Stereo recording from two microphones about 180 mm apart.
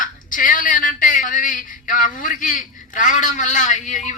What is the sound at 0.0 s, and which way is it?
A man's voice, 45° left (ahead or behind).